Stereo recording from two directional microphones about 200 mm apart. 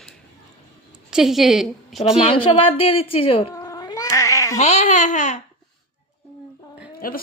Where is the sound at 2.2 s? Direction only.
25° left (ahead or behind).